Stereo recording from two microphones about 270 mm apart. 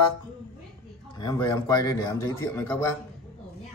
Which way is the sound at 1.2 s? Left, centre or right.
Centre.